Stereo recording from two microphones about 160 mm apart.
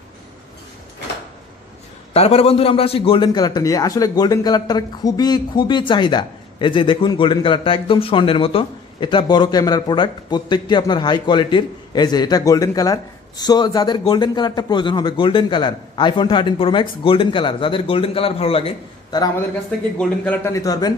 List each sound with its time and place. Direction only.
2.1 s a man's voice: 40° left (ahead or behind)
20.0 s a man's voice: 15° left (ahead or behind)